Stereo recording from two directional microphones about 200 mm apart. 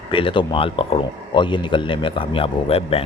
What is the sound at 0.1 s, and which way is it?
Speech, 25° left (ahead or behind).